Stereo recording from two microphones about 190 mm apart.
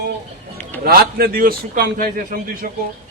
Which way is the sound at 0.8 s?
50° right (ahead or behind).